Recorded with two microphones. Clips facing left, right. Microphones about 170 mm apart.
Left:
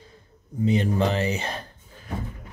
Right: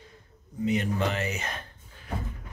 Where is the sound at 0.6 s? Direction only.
30° left (ahead or behind).